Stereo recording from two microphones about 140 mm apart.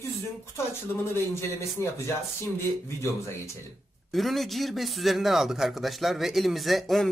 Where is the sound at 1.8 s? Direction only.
20° left (ahead or behind).